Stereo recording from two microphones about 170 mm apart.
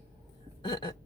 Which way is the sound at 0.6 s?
30° left (ahead or behind).